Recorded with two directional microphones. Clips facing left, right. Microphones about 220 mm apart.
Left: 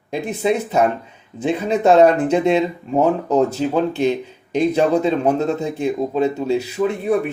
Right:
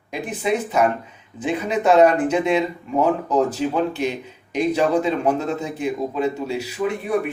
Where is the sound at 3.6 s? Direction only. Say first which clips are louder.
Left 2 dB; 30° left (ahead or behind).